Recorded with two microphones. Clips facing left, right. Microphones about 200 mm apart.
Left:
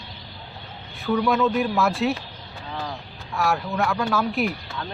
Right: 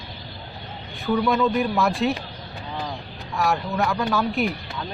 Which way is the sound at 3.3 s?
Centre (ahead or behind).